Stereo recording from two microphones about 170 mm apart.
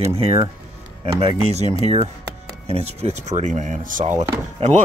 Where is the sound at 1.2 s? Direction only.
35° right (ahead or behind); by 4.2 s 50° right (ahead or behind).